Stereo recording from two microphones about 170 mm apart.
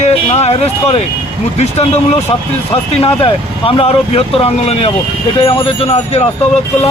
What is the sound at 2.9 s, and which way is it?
Speech, 35° left (ahead or behind).